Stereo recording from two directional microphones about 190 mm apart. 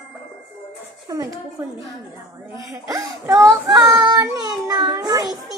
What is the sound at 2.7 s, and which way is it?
Child singing, 20° right (ahead or behind).